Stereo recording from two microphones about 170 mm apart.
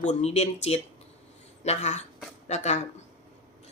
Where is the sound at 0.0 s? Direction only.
40° left (ahead or behind).